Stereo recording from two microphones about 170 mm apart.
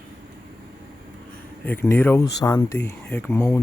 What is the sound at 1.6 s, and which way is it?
Speech, 10° left (ahead or behind).